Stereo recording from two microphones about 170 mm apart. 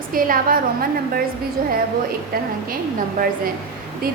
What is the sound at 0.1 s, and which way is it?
A woman's voice, 55° right (ahead or behind).